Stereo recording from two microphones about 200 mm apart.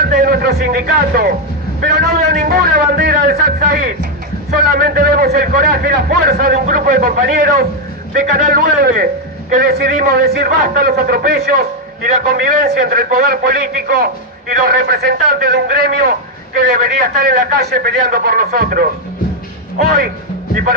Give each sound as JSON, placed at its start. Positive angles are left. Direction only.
{"t": 0.1, "sound": "a man's voice", "side_deg": -50}